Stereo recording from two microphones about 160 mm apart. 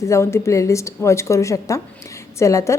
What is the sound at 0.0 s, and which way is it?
A woman's voice, 15° left (ahead or behind).